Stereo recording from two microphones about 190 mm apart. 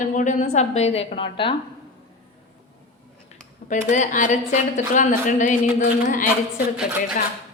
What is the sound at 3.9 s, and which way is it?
A woman's voice, 40° left (ahead or behind).